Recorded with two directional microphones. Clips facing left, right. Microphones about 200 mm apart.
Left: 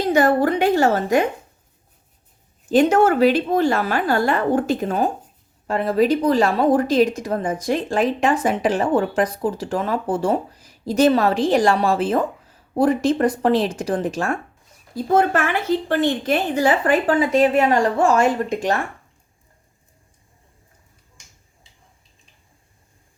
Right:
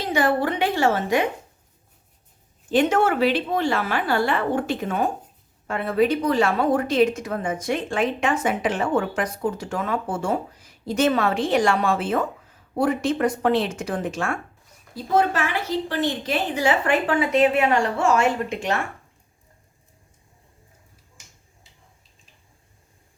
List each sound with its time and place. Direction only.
0.0 s a woman's voice: 45° left (ahead or behind)
2.6 s a woman's voice: 40° left (ahead or behind)
14.9 s a woman's voice: 50° left (ahead or behind)